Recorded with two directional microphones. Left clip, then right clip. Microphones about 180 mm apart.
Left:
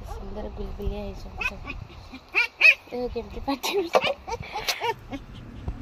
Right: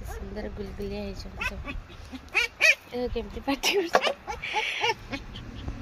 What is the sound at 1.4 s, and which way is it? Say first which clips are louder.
Speech: left 3 dB; 45° right (ahead or behind).